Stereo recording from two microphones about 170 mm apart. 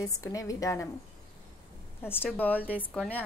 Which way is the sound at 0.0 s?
20° left (ahead or behind).